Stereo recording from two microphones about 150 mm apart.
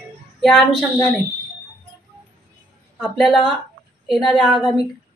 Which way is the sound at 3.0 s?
5° left (ahead or behind).